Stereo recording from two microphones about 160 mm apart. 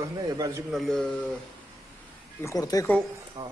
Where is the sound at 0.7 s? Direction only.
5° left (ahead or behind).